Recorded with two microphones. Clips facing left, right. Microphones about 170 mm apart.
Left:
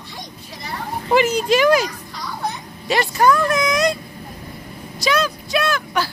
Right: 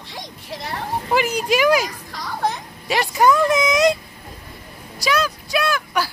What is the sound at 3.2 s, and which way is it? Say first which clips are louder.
Speech: right 1 dB; 20° right (ahead or behind).